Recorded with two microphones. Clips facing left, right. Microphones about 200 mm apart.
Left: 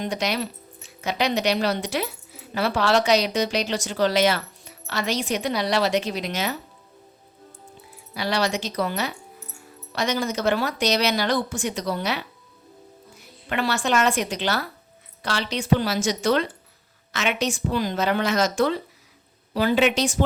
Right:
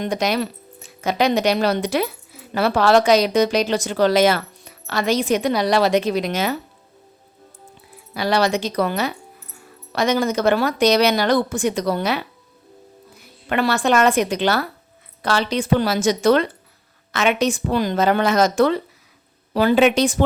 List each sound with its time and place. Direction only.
0.0 s speech: 55° right (ahead or behind)
8.1 s speech: 55° right (ahead or behind)
13.5 s speech: 55° right (ahead or behind)